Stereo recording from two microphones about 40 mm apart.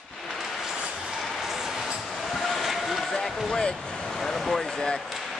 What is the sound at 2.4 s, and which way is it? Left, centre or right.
Vehicle, centre.